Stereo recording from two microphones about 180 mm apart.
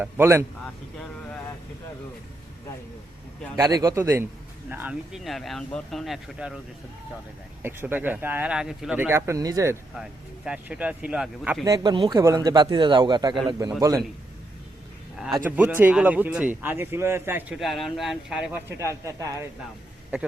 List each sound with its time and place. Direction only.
0.0 s speech: 10° right (ahead or behind)
3.5 s speech: 20° right (ahead or behind); by 6.6 s centre (ahead or behind)
7.6 s speech: 10° right (ahead or behind)
9.9 s speech: 5° right (ahead or behind)
11.6 s speech: 20° right (ahead or behind)
15.4 s speech: 10° right (ahead or behind)
17.6 s speech: centre (ahead or behind)
18.8 s speech: 15° right (ahead or behind)